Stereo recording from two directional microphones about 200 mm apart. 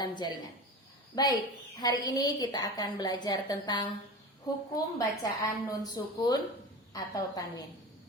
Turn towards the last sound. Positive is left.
turn(degrees=20)  # may be behind; listen again after turning